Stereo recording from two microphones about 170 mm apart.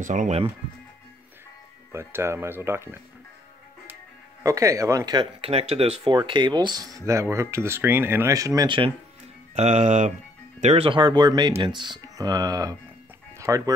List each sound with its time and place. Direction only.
0.0 s speech: 50° right (ahead or behind)
1.9 s speech: 15° right (ahead or behind)
4.4 s speech: 20° right (ahead or behind); by 5.9 s 35° right (ahead or behind)
6.0 s speech: 25° right (ahead or behind)
9.6 s speech: 45° right (ahead or behind); by 13.7 s 20° right (ahead or behind)